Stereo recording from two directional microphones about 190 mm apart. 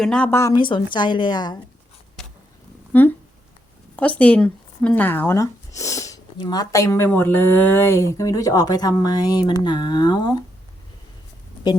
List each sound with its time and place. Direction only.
0.0 s a woman's voice: 5° left (ahead or behind); by 1.5 s 20° left (ahead or behind)
2.9 s speech: 10° left (ahead or behind)